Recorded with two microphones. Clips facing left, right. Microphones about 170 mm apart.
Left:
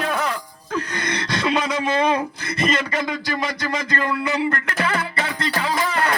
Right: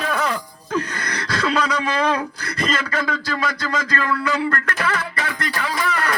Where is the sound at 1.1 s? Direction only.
20° left (ahead or behind).